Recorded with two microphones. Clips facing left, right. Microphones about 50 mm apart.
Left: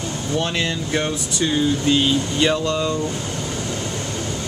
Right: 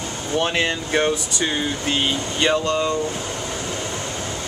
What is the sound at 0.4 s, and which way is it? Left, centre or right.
Speech, right.